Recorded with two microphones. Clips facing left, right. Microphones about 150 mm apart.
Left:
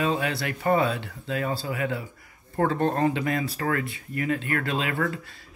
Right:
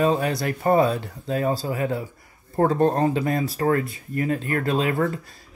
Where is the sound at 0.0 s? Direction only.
40° right (ahead or behind).